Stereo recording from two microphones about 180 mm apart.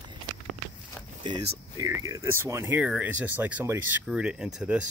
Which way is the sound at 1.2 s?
25° right (ahead or behind).